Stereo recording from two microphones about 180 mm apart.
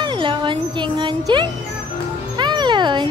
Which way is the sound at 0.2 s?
25° right (ahead or behind).